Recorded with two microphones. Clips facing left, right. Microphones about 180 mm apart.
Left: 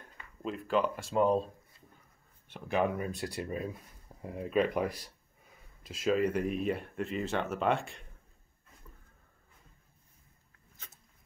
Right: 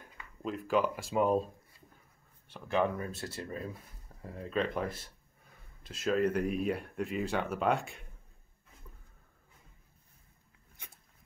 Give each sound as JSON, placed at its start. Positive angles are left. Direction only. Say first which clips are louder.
{"t": 0.0, "sound": "speech", "louder": "even", "side_deg": -5}
{"t": 2.7, "sound": "speech", "louder": "even", "side_deg": 10}
{"t": 5.5, "sound": "a sound", "louder": "left 2 dB", "side_deg": 5}
{"t": 6.4, "sound": "speech", "louder": "even", "side_deg": -5}